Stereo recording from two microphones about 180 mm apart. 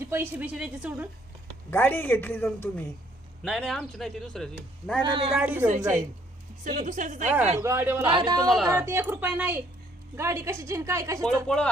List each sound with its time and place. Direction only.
0.0 s speech: 15° right (ahead or behind)
1.7 s speech: 10° left (ahead or behind)
5.0 s speech: 25° right (ahead or behind)
5.3 s speech: 5° right (ahead or behind)
6.7 s a woman's voice: 45° right (ahead or behind)
7.6 s speech: 15° right (ahead or behind)
8.0 s speech: 25° right (ahead or behind)
11.4 s speech: 5° left (ahead or behind)